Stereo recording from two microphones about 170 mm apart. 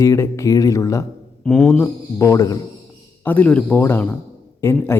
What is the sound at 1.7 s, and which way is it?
Speech, 15° left (ahead or behind).